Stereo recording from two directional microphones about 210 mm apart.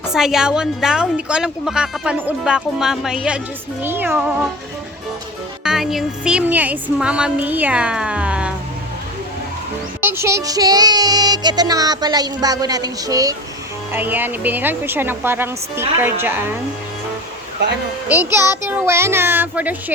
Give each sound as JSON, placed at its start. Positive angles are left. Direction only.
{"t": 0.1, "sound": "a woman's voice", "side_deg": 0}
{"t": 3.8, "sound": "child singing", "side_deg": -10}
{"t": 5.6, "sound": "a woman's voice", "side_deg": 0}
{"t": 10.0, "sound": "child singing", "side_deg": -10}
{"t": 17.6, "sound": "speech", "side_deg": -55}
{"t": 18.3, "sound": "child singing", "side_deg": -10}